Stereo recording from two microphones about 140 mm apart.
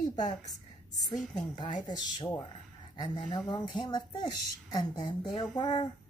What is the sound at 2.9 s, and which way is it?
A woman's voice, 30° left (ahead or behind).